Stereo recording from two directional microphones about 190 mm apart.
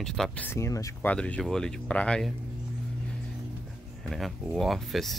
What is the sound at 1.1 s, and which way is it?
Speech, 5° left (ahead or behind).